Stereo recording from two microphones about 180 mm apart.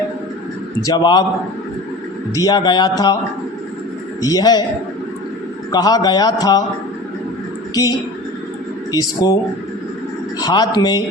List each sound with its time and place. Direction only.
0.9 s a man's voice: 25° left (ahead or behind)
2.3 s a man's voice: 20° left (ahead or behind)
4.2 s a man's voice: 20° left (ahead or behind)
5.7 s a man's voice: 20° left (ahead or behind)
7.7 s a woman's voice: 20° left (ahead or behind)
10.4 s a man's voice: 20° left (ahead or behind)